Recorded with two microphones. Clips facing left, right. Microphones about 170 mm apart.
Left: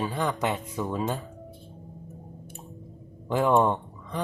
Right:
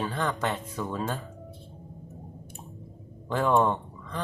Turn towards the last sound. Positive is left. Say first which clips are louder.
# left 2 dB
turn(degrees=10)  # may be behind; listen again after turning